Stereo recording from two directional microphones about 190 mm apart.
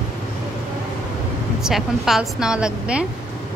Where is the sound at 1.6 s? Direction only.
Centre (ahead or behind).